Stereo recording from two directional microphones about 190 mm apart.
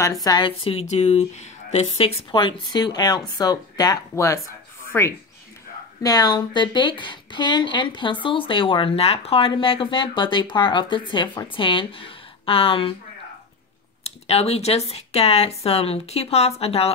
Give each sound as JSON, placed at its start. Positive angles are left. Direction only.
{"t": 0.0, "sound": "a woman's voice", "side_deg": 20}
{"t": 14.0, "sound": "speech", "side_deg": 35}